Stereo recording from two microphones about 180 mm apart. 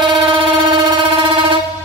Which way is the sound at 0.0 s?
30° right (ahead or behind).